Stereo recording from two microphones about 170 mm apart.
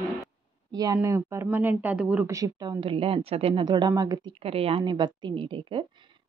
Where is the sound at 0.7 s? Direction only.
20° right (ahead or behind).